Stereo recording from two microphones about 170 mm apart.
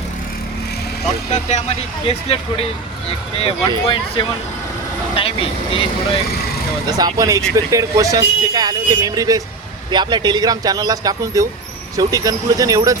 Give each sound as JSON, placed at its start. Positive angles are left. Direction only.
{"t": 1.3, "sound": "speech", "side_deg": 45}
{"t": 6.8, "sound": "speech", "side_deg": -20}